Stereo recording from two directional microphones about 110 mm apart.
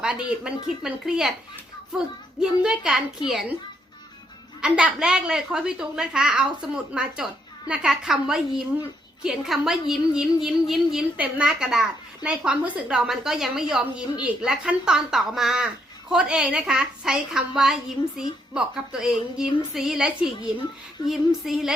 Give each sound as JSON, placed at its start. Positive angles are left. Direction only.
{"t": 0.0, "sound": "a woman's voice", "side_deg": -10}
{"t": 2.4, "sound": "a woman's voice", "side_deg": -5}
{"t": 4.6, "sound": "a woman's voice", "side_deg": -10}
{"t": 21.1, "sound": "a woman's voice", "side_deg": 0}